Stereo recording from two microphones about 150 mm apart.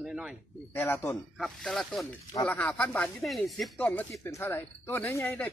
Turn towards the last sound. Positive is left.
turn(degrees=15)  # may be behind; listen again after turning